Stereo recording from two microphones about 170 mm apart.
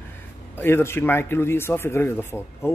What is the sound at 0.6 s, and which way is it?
Speech, 15° left (ahead or behind).